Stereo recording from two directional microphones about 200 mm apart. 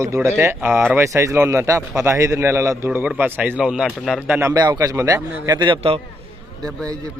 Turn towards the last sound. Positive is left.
turn(degrees=-20)  # may be behind; listen again after turning